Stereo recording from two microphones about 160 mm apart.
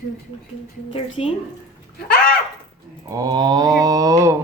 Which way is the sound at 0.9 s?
35° left (ahead or behind).